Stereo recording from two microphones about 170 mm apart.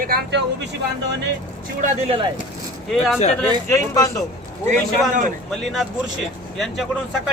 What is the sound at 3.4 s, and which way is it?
Speech, 15° left (ahead or behind).